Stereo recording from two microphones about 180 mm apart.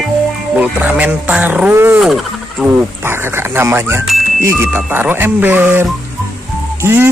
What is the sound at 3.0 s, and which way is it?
Speech, 15° right (ahead or behind).